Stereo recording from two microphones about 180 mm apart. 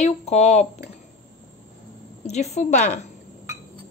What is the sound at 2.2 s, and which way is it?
Speech, 40° left (ahead or behind).